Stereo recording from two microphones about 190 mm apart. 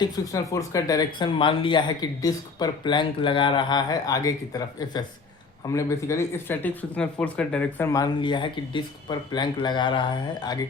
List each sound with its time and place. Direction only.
0.2 s speech: 20° left (ahead or behind)